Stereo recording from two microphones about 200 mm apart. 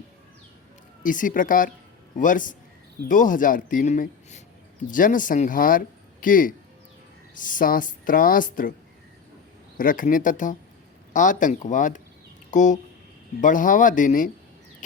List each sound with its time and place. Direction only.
1.0 s speech: 40° left (ahead or behind)
9.7 s speech: 40° left (ahead or behind)